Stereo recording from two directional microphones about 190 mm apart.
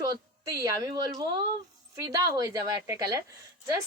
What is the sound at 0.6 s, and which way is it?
A woman's voice, 20° right (ahead or behind).